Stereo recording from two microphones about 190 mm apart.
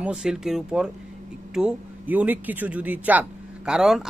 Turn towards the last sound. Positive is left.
turn(degrees=0)  # may be behind; listen again after turning